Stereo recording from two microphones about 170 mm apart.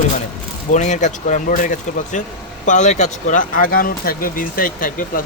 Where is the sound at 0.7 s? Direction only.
45° left (ahead or behind).